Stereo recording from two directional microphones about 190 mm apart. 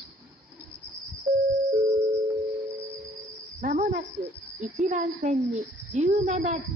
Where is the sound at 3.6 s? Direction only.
40° right (ahead or behind).